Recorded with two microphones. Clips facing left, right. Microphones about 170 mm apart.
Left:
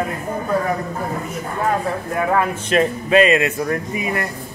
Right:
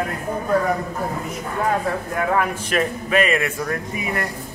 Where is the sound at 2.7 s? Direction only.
25° left (ahead or behind).